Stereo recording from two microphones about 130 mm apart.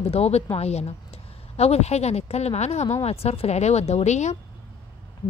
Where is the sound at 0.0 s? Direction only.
50° left (ahead or behind).